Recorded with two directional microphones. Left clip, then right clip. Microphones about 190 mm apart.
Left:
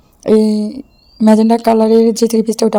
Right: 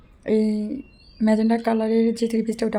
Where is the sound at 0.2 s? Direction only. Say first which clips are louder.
Left 10 dB; 35° left (ahead or behind).